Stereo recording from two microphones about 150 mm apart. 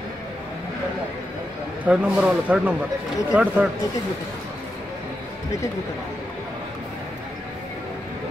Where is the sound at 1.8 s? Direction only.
10° right (ahead or behind).